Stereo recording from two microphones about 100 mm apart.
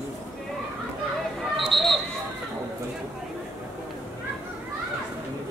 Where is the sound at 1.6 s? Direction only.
Centre (ahead or behind).